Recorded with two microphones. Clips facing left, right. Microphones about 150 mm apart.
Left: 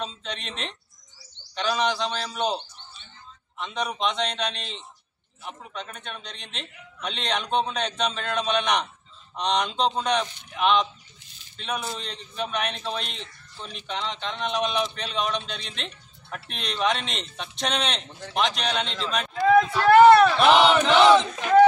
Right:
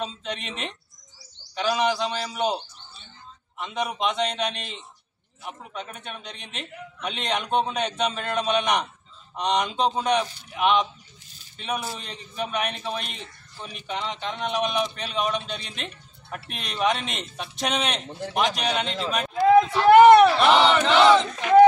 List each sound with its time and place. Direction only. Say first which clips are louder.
0.0 s a man's voice: right 2 dB; 5° right (ahead or behind)
18.0 s speech: right 7 dB; 30° right (ahead or behind)
18.6 s a man's voice: right 2 dB; 5° right (ahead or behind)
19.7 s a sound: right 1 dB; 15° right (ahead or behind)
20.3 s a man's voice: left 1 dB; centre (ahead or behind)